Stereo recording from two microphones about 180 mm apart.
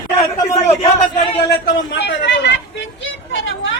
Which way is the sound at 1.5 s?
65° left (ahead or behind).